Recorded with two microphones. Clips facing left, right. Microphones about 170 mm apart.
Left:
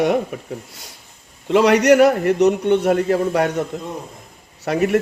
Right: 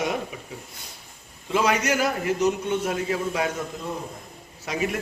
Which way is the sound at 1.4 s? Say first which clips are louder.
Left 10 dB; 70° left (ahead or behind).